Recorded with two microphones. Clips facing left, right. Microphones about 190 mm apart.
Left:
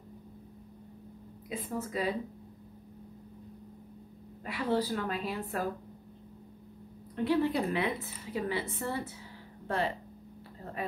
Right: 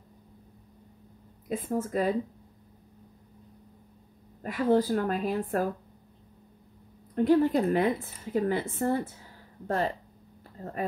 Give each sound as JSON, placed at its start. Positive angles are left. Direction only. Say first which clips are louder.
{"t": 1.5, "sound": "a woman's voice", "louder": "right 6 dB", "side_deg": -45}
{"t": 4.4, "sound": "a woman's voice", "louder": "right 6 dB", "side_deg": -45}
{"t": 7.2, "sound": "a woman's voice", "louder": "right 6 dB", "side_deg": -45}